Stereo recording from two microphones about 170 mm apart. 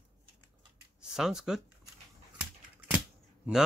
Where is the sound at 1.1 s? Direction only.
5° right (ahead or behind).